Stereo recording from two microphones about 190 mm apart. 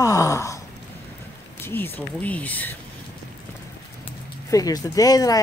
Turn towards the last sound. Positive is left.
turn(degrees=20)  # may be behind; listen again after turning